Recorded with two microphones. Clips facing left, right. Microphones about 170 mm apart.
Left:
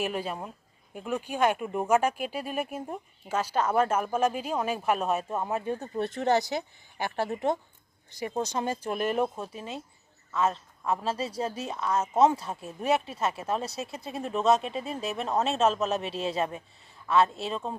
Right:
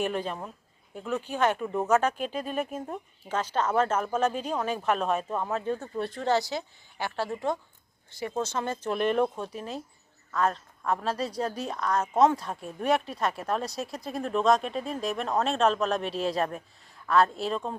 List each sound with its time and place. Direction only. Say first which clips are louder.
0.0 s a woman's voice: right 1 dB; 10° left (ahead or behind)